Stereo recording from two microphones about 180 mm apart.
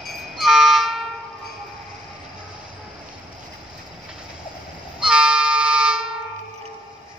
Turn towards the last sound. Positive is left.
turn(degrees=-5)  # may be behind; listen again after turning